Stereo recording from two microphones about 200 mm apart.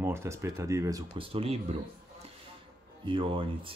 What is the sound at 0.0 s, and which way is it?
Speech, 15° right (ahead or behind).